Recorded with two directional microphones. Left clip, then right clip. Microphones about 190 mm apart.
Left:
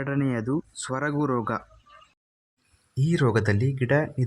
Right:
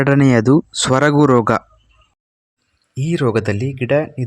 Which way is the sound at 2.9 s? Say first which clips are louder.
Right 7 dB; 20° right (ahead or behind).